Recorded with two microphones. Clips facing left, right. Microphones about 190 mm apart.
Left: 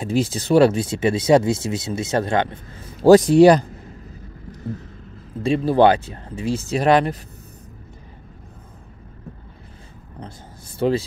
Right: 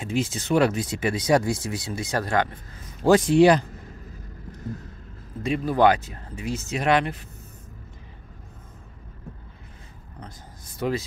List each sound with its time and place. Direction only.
0.0 s speech: 35° left (ahead or behind)
3.0 s speech: 40° left (ahead or behind)
5.4 s speech: 30° left (ahead or behind)
10.8 s speech: 30° left (ahead or behind)